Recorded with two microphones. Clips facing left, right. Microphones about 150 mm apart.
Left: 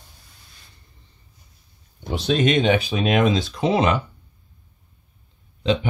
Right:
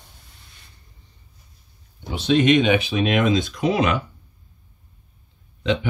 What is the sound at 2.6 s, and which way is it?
Speech, 40° left (ahead or behind).